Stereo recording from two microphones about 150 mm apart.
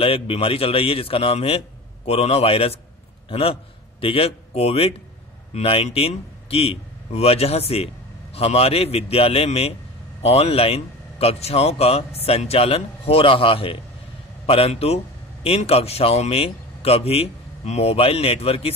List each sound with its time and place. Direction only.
0.0 s a man's voice: 40° left (ahead or behind)